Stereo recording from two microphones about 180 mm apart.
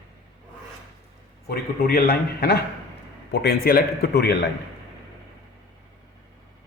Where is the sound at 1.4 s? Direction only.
60° left (ahead or behind).